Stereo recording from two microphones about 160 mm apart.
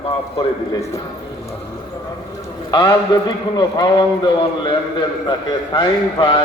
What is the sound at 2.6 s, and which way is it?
A man's voice, 25° left (ahead or behind).